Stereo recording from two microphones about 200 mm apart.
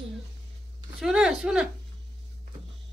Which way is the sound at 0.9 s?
5° right (ahead or behind).